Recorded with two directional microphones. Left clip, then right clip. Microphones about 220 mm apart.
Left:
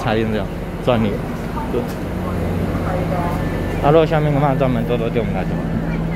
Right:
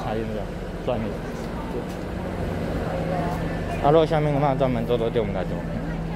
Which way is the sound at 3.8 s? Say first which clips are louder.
Left 4 dB; centre (ahead or behind).